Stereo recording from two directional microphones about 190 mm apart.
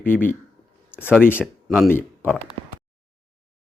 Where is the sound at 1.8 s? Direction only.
10° left (ahead or behind).